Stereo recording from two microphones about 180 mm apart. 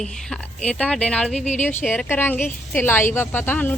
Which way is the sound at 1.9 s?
10° left (ahead or behind).